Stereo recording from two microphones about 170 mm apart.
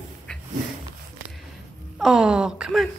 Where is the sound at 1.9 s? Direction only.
5° right (ahead or behind).